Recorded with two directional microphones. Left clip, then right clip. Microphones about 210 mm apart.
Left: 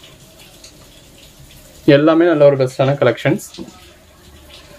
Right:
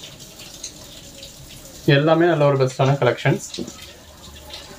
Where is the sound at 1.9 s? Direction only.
55° left (ahead or behind).